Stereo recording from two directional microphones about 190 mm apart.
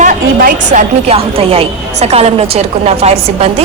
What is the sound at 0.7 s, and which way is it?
A woman's voice, 30° right (ahead or behind).